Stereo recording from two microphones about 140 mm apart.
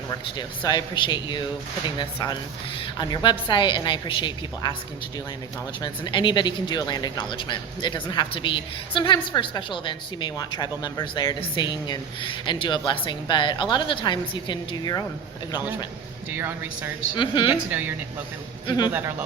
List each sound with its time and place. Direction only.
0.1 s speech: 30° left (ahead or behind)
5.8 s speech: 35° left (ahead or behind)
16.3 s speech: 15° right (ahead or behind)
17.2 s speech: 35° left (ahead or behind)
17.7 s speech: 15° right (ahead or behind)